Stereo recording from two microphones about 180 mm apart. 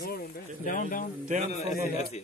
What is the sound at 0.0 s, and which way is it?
Speech, 55° left (ahead or behind).